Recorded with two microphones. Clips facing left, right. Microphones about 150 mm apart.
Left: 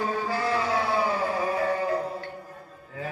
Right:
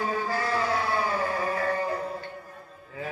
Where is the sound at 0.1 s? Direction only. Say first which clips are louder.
Left 1 dB; centre (ahead or behind).